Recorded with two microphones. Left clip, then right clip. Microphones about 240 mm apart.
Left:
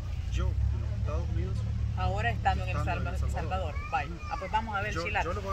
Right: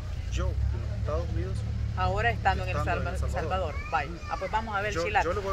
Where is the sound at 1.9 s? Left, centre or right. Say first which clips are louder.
Right 5 dB; centre.